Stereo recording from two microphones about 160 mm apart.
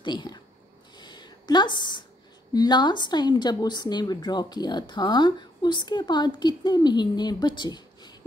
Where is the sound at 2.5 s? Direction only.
25° left (ahead or behind).